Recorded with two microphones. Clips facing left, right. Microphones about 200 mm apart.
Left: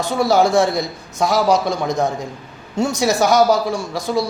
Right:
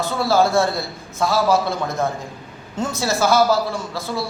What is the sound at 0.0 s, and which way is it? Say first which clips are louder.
A man's voice: left 2 dB; 15° left (ahead or behind).